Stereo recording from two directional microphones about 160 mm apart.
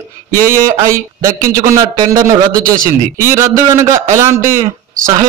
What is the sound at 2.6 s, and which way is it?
Speech, 60° right (ahead or behind).